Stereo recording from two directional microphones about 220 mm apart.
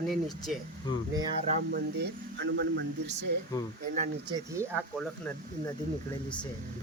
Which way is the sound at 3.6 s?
20° left (ahead or behind).